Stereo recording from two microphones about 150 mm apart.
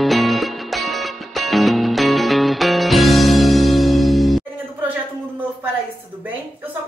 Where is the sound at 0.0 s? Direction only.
Centre (ahead or behind).